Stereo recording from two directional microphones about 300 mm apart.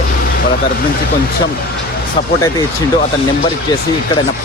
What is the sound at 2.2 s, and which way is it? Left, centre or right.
Speech, centre.